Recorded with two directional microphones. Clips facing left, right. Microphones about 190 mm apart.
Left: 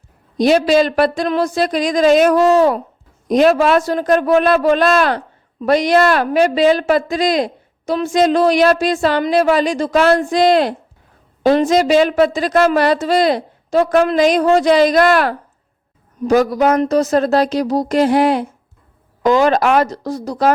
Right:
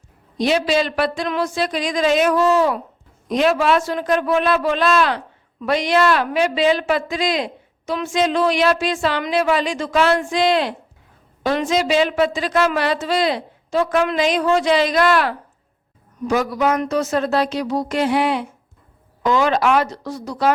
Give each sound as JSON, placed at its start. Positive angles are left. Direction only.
{"t": 0.3, "sound": "a man's voice", "side_deg": 40}